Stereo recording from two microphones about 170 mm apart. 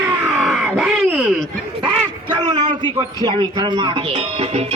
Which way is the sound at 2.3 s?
25° right (ahead or behind).